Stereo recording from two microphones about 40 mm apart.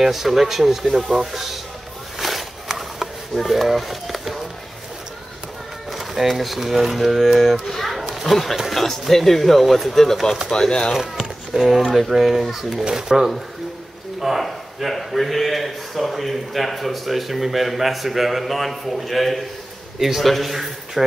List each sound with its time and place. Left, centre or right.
0.0 s a man's voice: centre
2.1 s a sound: centre
5.9 s speech: centre
7.6 s children playing: centre
8.0 s a sound: centre
8.7 s a man's voice: centre
10.5 s speech: centre
11.0 s speech: centre
14.2 s a man's voice: centre